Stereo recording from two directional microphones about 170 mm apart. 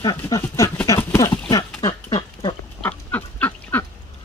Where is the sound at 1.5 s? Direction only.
25° left (ahead or behind).